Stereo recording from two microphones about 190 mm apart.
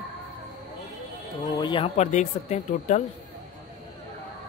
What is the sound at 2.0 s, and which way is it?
Speech, 40° left (ahead or behind).